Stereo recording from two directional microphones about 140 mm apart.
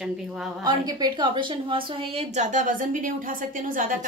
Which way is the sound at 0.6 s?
30° right (ahead or behind).